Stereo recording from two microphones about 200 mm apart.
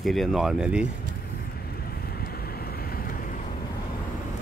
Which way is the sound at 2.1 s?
50° left (ahead or behind).